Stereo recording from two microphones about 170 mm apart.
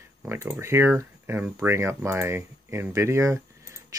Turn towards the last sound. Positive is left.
turn(degrees=-15)  # may be behind; listen again after turning